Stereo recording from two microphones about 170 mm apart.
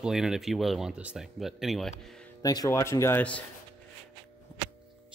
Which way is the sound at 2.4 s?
20° left (ahead or behind).